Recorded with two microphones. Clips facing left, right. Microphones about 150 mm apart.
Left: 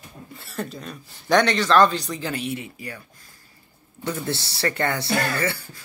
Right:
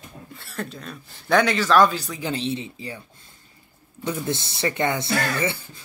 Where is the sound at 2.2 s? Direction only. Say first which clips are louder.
Right 2 dB; 25° right (ahead or behind).